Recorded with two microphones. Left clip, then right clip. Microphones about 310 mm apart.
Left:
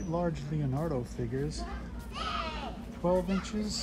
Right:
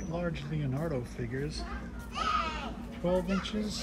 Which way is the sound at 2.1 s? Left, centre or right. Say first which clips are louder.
Right 4 dB; left.